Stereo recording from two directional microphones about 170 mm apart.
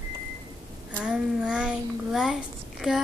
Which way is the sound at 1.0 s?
5° right (ahead or behind).